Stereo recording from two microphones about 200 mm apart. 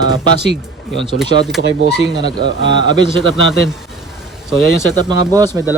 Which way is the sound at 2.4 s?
90° left.